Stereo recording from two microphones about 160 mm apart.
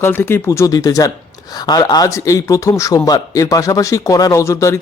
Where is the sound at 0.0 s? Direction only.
15° left (ahead or behind).